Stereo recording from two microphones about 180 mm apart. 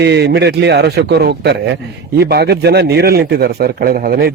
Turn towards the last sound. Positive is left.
turn(degrees=-60)  # may be behind; listen again after turning